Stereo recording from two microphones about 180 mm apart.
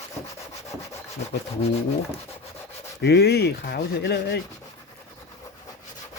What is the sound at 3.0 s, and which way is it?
Speech, 65° left (ahead or behind).